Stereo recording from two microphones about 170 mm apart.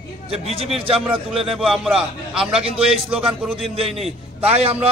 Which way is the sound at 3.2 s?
Centre (ahead or behind).